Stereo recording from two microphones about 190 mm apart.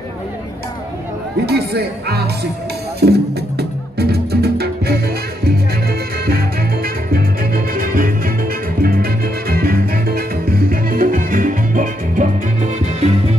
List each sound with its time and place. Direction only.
1.4 s speech: 55° right (ahead or behind)
3.0 s music: 60° right (ahead or behind)
6.2 s salsa music: 55° right (ahead or behind)
8.8 s music: 50° right (ahead or behind); by 13.4 s 35° right (ahead or behind)